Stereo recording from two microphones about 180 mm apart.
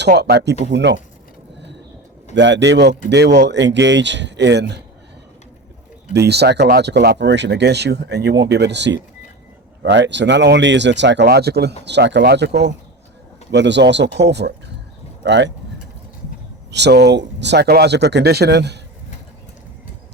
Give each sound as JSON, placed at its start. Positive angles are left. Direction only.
{"t": 0.0, "sound": "speech", "side_deg": -65}
{"t": 2.3, "sound": "speech", "side_deg": -80}
{"t": 6.1, "sound": "speech", "side_deg": -65}
{"t": 16.7, "sound": "speech", "side_deg": -70}